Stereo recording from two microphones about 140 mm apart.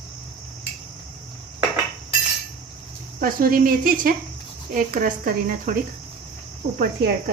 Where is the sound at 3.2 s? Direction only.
80° right.